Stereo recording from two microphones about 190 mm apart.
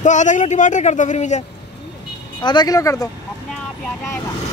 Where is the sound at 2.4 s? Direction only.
20° left (ahead or behind).